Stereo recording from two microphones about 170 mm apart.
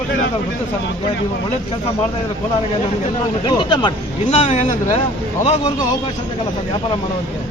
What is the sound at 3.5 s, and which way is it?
A man's voice, 25° left (ahead or behind).